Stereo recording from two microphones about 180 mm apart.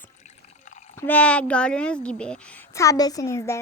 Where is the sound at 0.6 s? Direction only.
40° left (ahead or behind).